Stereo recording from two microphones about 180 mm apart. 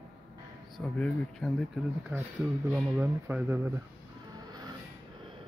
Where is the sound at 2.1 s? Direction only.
10° right (ahead or behind).